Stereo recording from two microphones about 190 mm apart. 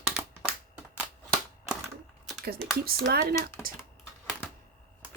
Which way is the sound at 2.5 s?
50° right (ahead or behind).